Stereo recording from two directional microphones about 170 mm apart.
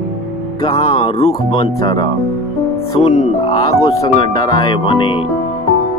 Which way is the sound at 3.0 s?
40° left (ahead or behind).